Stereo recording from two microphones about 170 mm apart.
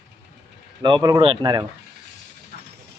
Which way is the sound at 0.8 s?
25° right (ahead or behind).